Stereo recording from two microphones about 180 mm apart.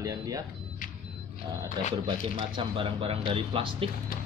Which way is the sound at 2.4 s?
30° right (ahead or behind).